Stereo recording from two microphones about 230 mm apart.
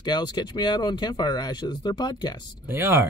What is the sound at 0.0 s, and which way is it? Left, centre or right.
Speech, centre.